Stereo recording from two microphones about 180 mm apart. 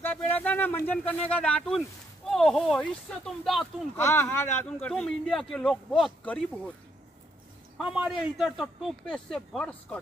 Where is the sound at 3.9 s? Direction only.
15° left (ahead or behind).